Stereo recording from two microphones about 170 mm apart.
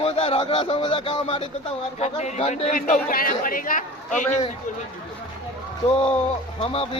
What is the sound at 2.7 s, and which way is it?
A man's voice, 55° left (ahead or behind).